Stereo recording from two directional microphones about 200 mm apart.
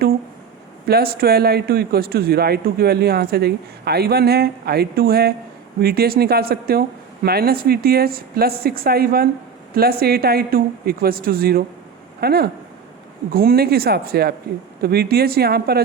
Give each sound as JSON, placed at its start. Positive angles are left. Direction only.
{"t": 0.9, "sound": "speech", "side_deg": -50}